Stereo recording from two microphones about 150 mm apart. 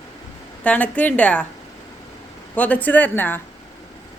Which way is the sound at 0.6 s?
10° left (ahead or behind).